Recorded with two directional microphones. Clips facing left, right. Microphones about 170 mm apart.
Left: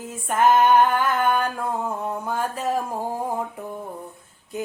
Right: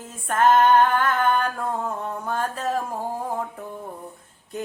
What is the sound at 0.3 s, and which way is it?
Female singing, 10° left (ahead or behind).